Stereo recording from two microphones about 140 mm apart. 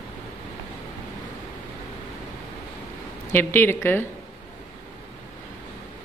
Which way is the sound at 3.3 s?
15° left (ahead or behind).